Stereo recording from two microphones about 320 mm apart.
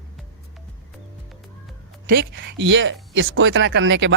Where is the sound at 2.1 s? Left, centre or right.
Right.